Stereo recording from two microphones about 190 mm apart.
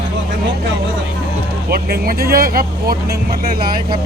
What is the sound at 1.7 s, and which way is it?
Speech, 55° right (ahead or behind).